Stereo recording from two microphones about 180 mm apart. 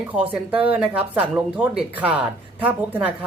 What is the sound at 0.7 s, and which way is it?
Speech, 10° right (ahead or behind).